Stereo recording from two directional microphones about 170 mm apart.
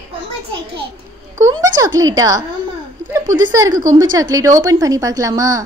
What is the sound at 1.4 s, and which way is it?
A woman's voice, 20° right (ahead or behind).